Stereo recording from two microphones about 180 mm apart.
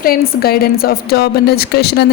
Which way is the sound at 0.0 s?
55° left (ahead or behind).